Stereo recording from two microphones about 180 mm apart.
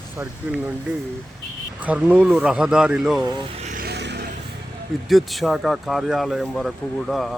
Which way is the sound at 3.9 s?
70° right (ahead or behind).